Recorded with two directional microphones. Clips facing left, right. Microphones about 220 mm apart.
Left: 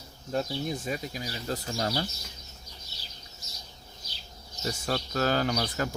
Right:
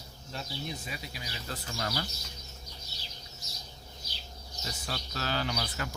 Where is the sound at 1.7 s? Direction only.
25° left (ahead or behind).